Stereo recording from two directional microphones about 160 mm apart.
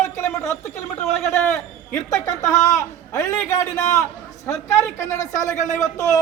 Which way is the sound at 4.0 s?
10° left (ahead or behind).